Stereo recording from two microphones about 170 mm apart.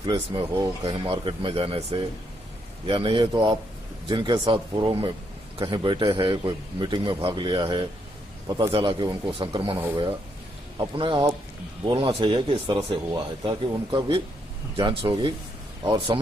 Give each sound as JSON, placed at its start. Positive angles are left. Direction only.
{"t": 0.0, "sound": "speech", "side_deg": -30}
{"t": 10.8, "sound": "speech", "side_deg": -30}